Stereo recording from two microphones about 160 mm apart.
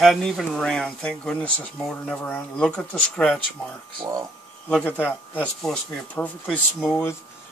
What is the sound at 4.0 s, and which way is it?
Speech, 25° right (ahead or behind).